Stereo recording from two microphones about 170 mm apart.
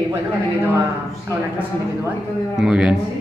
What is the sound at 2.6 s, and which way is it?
Speech, 5° right (ahead or behind).